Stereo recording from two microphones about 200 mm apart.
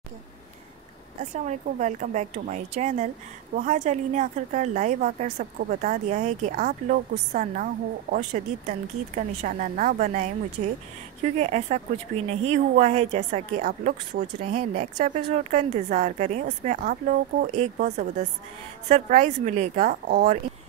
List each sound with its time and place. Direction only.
1.3 s a woman's voice: 35° right (ahead or behind)
11.3 s a woman's voice: 35° right (ahead or behind)